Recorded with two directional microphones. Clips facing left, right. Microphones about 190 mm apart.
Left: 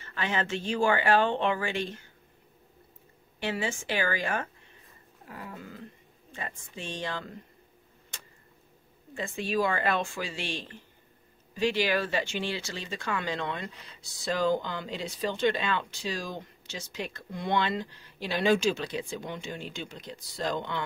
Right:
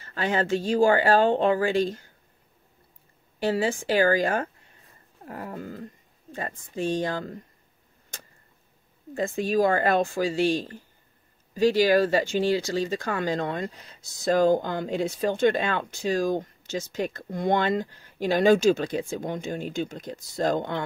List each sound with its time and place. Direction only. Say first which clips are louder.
0.0 s speech: right 5 dB; 40° right (ahead or behind)
3.3 s speech: right 7 dB; 40° right (ahead or behind)
9.1 s speech: right 6 dB; 40° right (ahead or behind)